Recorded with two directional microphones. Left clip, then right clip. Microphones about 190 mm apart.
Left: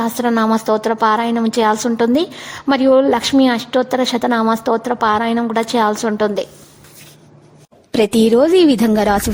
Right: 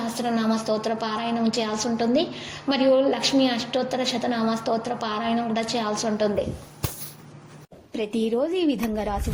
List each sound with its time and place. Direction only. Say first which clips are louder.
0.2 s a woman's voice: left 9 dB; 40° left (ahead or behind)
7.9 s a woman's voice: left 13 dB; 70° left (ahead or behind)